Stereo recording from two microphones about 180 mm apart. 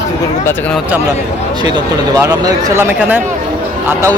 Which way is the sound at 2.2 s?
20° right (ahead or behind).